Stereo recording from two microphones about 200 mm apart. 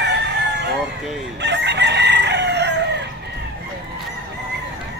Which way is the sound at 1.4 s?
60° right (ahead or behind).